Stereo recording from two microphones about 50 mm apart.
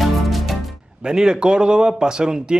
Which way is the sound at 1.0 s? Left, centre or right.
Centre.